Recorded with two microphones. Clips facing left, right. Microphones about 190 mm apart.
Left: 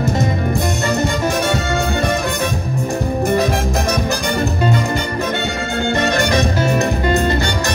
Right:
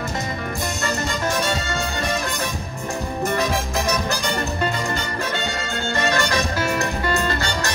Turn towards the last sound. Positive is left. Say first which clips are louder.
# left 5 dB
turn(degrees=20)  # may be behind; listen again after turning